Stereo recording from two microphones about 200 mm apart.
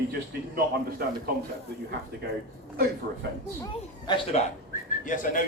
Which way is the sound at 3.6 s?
25° left (ahead or behind).